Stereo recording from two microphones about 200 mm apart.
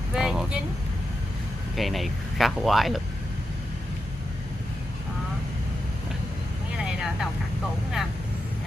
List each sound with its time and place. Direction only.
0.1 s vehicle: 5° right (ahead or behind)
1.8 s speech: centre (ahead or behind)
6.8 s vehicle: 5° right (ahead or behind)